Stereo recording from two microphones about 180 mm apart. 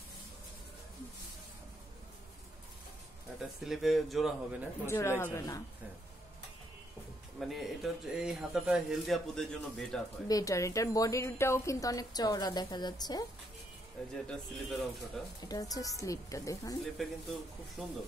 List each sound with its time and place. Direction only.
3.3 s speech: centre (ahead or behind)
4.8 s speech: 15° left (ahead or behind)
7.3 s speech: centre (ahead or behind)
10.2 s a woman's voice: 20° left (ahead or behind)
14.2 s speech: centre (ahead or behind)
15.4 s a woman's voice: 20° left (ahead or behind)
17.8 s speech: centre (ahead or behind)